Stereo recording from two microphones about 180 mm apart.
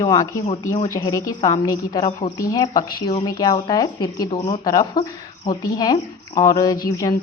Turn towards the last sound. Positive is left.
turn(degrees=20)  # may be behind; listen again after turning